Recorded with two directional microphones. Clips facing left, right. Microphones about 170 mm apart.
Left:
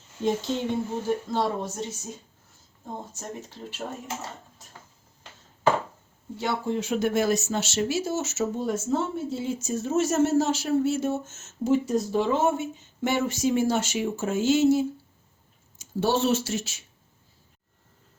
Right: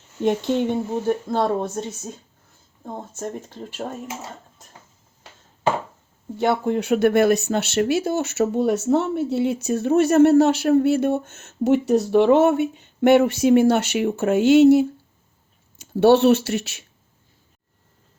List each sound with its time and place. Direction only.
0.2 s speech: 60° right (ahead or behind)
6.4 s speech: 60° right (ahead or behind)